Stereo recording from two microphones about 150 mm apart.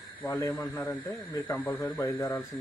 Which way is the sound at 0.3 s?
15° left (ahead or behind).